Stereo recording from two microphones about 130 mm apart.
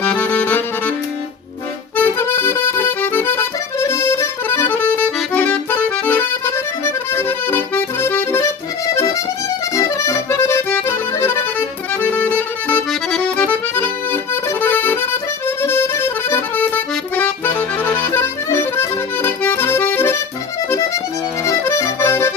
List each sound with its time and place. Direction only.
0.0 s accordion: 10° left (ahead or behind)
2.0 s accordion: 15° left (ahead or behind)
9.7 s accordion: 25° left (ahead or behind)
12.1 s music: 15° left (ahead or behind)
12.9 s accordion: centre (ahead or behind); by 20.2 s 20° left (ahead or behind)
21.4 s accordion: 20° left (ahead or behind)